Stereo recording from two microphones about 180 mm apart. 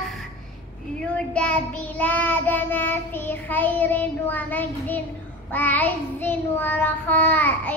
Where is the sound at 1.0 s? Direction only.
5° left (ahead or behind).